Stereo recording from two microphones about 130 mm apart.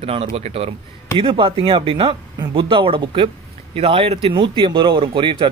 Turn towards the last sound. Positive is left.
turn(degrees=-40)  # may be behind; listen again after turning